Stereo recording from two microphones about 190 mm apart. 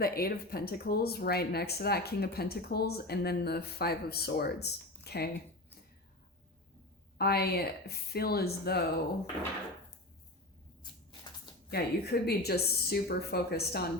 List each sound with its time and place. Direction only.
0.0 s speech: 50° left (ahead or behind)
7.2 s speech: 55° left (ahead or behind)
11.7 s speech: 55° left (ahead or behind)